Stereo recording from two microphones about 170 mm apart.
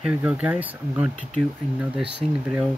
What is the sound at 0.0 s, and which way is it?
Speech, 10° right (ahead or behind).